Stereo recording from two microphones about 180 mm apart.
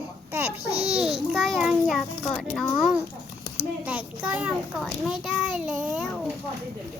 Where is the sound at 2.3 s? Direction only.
Centre (ahead or behind).